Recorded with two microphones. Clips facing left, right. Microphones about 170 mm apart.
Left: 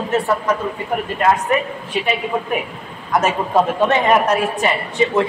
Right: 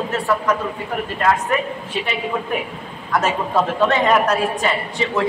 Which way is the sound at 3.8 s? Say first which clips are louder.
Left 1 dB; 20° left (ahead or behind).